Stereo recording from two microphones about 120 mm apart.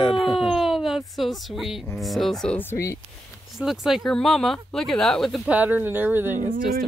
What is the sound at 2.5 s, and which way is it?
Speech, 20° left (ahead or behind).